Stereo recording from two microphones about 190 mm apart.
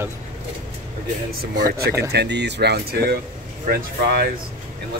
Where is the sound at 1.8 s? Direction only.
60° right (ahead or behind).